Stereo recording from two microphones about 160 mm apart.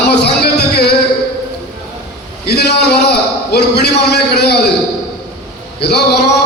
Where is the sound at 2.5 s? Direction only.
90° left.